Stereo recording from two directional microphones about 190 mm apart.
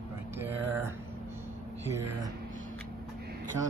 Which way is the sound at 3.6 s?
15° right (ahead or behind).